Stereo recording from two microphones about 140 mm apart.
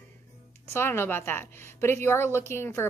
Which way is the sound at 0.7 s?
15° left (ahead or behind).